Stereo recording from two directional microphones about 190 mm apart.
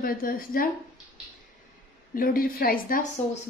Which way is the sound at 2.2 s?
50° left (ahead or behind).